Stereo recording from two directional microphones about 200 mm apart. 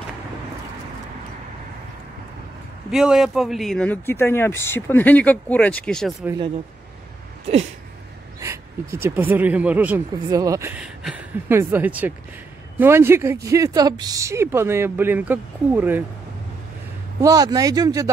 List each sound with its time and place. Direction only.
2.9 s speech: centre (ahead or behind)
6.2 s speech: 20° right (ahead or behind)
9.0 s speech: 10° right (ahead or behind)
17.2 s speech: 20° right (ahead or behind)